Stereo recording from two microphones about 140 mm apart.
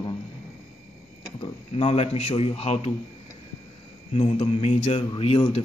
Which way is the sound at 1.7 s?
50° left (ahead or behind).